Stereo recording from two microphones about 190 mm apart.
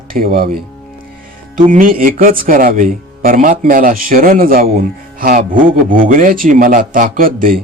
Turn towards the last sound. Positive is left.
turn(degrees=-50)  # may be behind; listen again after turning